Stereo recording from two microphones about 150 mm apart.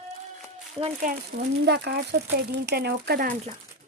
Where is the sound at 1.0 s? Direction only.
90° right.